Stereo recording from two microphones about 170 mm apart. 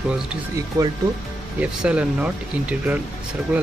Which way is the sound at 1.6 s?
5° right (ahead or behind).